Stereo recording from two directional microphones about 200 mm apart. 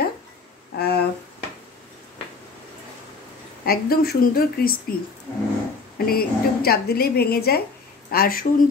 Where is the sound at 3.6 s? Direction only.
50° left (ahead or behind).